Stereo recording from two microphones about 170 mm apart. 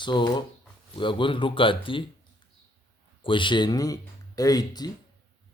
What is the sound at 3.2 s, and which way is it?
Speech, 30° left (ahead or behind).